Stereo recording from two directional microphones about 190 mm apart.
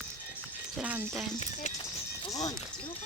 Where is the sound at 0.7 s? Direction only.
10° right (ahead or behind).